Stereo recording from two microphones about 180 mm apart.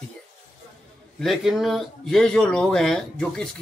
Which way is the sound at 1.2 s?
Centre (ahead or behind).